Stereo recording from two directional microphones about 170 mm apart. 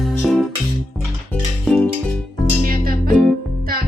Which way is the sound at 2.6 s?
55° right (ahead or behind).